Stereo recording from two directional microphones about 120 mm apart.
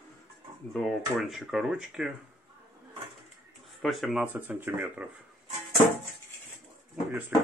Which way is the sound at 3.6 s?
Centre (ahead or behind).